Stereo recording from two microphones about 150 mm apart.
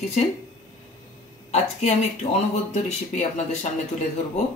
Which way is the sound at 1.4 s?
50° left (ahead or behind).